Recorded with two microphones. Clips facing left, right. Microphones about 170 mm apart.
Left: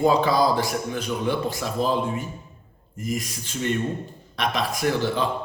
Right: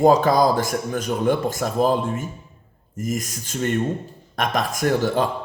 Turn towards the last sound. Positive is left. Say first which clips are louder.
# right 3 dB
turn(degrees=-45)  # may be behind; listen again after turning